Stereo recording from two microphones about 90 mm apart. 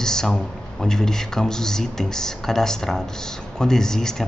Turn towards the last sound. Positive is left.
turn(degrees=5)  # may be behind; listen again after turning